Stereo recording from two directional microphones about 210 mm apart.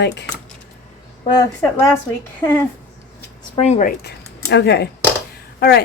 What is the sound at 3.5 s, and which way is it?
Speech, 30° left (ahead or behind).